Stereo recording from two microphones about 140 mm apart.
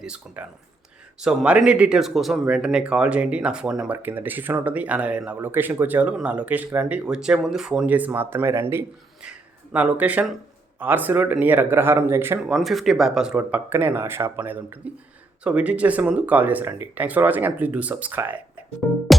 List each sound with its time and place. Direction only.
0.0 s speech: 5° right (ahead or behind)
12.4 s speech: 5° right (ahead or behind)